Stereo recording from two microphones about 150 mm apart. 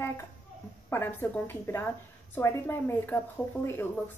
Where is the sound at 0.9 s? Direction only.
15° left (ahead or behind).